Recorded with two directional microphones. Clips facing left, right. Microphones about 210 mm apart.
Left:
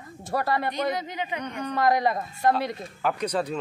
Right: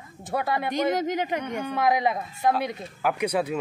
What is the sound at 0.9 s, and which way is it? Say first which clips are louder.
Speech: right 6 dB; 45° right (ahead or behind).